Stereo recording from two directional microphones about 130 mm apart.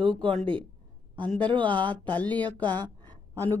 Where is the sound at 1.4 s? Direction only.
40° right (ahead or behind).